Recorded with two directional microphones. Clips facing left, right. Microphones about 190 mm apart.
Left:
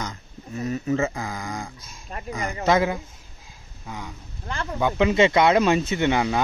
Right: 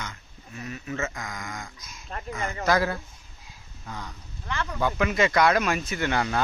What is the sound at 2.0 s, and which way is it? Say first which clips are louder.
Speech: left 2 dB; 15° left (ahead or behind).